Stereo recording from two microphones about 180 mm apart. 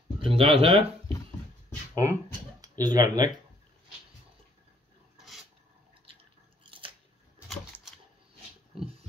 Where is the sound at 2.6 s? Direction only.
20° right (ahead or behind).